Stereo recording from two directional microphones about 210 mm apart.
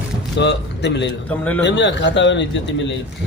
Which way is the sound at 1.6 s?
60° left (ahead or behind).